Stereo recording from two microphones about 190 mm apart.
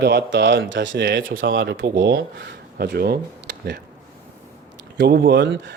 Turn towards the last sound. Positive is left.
turn(degrees=-65)  # may be behind; listen again after turning